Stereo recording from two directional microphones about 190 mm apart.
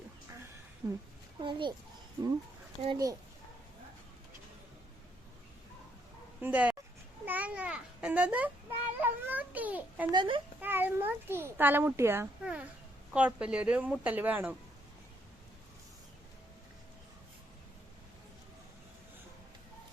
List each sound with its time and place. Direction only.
0.8 s a child's voice: 15° right (ahead or behind)
2.8 s a child's voice: 20° right (ahead or behind)
6.4 s a child's voice: 5° right (ahead or behind)
10.1 s a child's voice: 25° right (ahead or behind)
10.6 s a child's voice: 10° right (ahead or behind)